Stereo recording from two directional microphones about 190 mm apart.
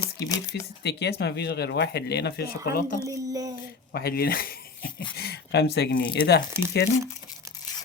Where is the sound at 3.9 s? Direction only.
55° left (ahead or behind).